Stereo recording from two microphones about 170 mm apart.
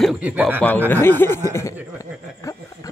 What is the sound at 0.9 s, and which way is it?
Speech, 10° left (ahead or behind).